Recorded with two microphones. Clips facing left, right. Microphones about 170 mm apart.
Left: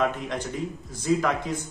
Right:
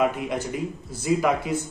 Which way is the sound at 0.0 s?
10° right (ahead or behind).